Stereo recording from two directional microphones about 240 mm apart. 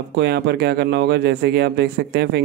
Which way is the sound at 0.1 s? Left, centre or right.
Right.